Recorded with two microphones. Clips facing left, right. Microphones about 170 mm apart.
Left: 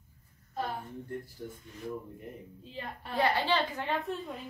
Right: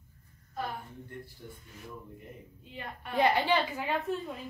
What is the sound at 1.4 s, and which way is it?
Speech, 45° left (ahead or behind).